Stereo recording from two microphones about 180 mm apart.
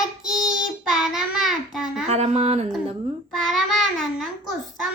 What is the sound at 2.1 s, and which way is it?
Music, 35° right (ahead or behind).